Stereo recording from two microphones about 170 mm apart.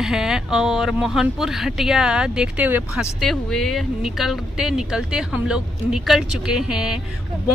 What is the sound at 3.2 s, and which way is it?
Speech, centre (ahead or behind).